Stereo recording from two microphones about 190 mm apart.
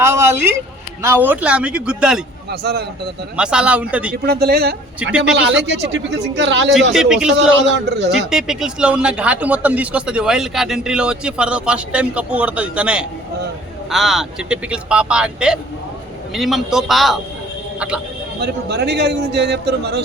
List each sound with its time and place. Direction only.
0.0 s speech: 15° right (ahead or behind)
2.5 s a man's voice: 60° right (ahead or behind)
3.3 s speech: 5° right (ahead or behind)
4.3 s a man's voice: 55° right (ahead or behind)
5.3 s a man's voice: 65° right (ahead or behind)
6.9 s speech: 5° right (ahead or behind)
7.9 s a man's voice: 65° right (ahead or behind)
8.3 s speech: 5° right (ahead or behind)
18.3 s a man's voice: 60° right (ahead or behind)